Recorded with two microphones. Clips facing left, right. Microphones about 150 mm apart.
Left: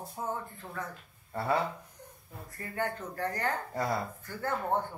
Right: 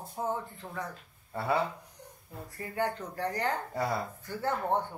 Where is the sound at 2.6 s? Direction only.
15° right (ahead or behind).